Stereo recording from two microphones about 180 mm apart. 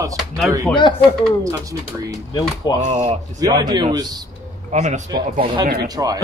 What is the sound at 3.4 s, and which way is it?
Chuckle, 20° right (ahead or behind).